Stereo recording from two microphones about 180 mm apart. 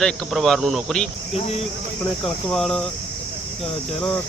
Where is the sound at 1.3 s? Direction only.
35° left (ahead or behind).